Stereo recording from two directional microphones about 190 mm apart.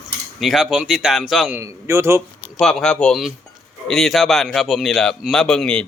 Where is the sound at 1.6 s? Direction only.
15° right (ahead or behind).